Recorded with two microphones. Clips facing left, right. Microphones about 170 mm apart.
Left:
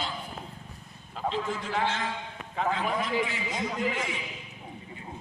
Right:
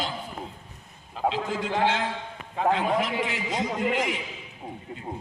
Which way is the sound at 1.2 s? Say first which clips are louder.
Right 4 dB; 70° right (ahead or behind).